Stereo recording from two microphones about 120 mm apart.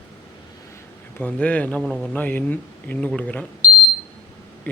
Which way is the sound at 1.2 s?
10° left (ahead or behind).